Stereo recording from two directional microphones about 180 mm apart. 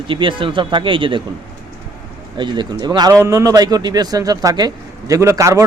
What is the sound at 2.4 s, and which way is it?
A man's voice, 25° right (ahead or behind).